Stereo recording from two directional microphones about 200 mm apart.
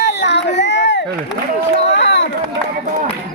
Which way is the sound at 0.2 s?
60° left (ahead or behind).